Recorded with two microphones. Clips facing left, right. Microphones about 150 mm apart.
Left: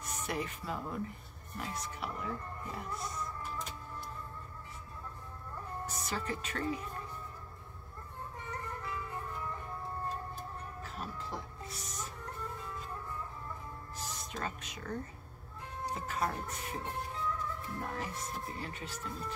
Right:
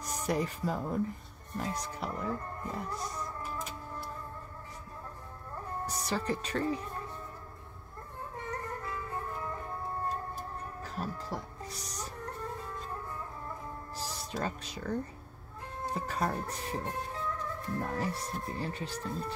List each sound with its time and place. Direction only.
0.0 s speech: 35° right (ahead or behind)
5.9 s speech: 35° right (ahead or behind)
8.5 s music: 40° right (ahead or behind)
10.8 s music: 40° right (ahead or behind)
13.9 s speech: 35° right (ahead or behind)